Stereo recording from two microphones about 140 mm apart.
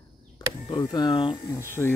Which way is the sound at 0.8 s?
30° left (ahead or behind).